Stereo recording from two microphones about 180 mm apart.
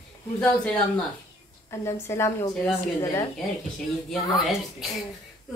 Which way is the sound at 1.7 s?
15° left (ahead or behind).